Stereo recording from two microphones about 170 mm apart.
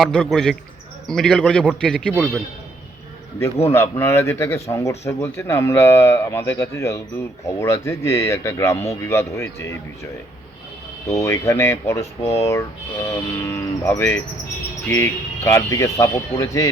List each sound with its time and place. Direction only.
0.0 s a man's voice: 5° left (ahead or behind)
3.4 s speech: 15° left (ahead or behind)
11.1 s speech: 15° left (ahead or behind)